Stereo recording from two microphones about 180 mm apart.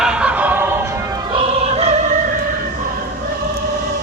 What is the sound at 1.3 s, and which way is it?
Music, 30° right (ahead or behind).